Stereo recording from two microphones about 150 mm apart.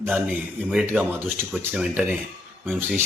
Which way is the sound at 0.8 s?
15° right (ahead or behind).